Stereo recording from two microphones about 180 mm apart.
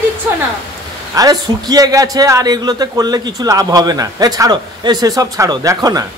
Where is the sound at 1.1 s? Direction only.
20° right (ahead or behind).